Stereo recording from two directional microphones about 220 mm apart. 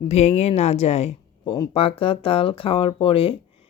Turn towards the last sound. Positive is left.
turn(degrees=25)  # may be behind; listen again after turning